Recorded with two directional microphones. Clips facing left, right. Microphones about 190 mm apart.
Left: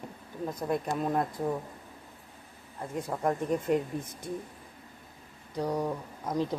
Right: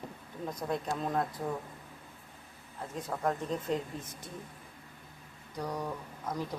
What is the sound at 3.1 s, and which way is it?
Speech, 15° left (ahead or behind).